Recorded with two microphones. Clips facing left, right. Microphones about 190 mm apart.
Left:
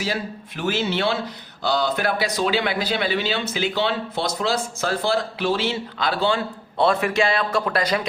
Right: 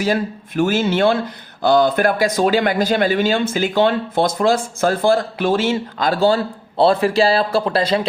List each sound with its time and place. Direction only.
0.0 s speech: 50° right (ahead or behind); by 8.0 s 30° right (ahead or behind)